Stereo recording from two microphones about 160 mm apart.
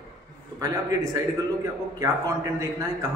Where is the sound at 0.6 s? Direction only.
20° right (ahead or behind).